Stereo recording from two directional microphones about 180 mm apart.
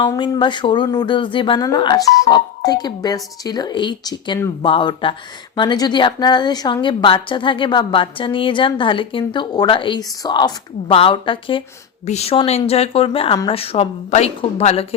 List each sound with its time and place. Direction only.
0.0 s a woman's voice: 25° left (ahead or behind)